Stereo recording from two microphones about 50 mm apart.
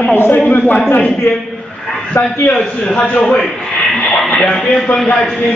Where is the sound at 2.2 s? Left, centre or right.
Left.